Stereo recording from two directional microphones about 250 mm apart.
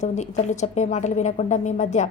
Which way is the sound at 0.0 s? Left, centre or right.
Left.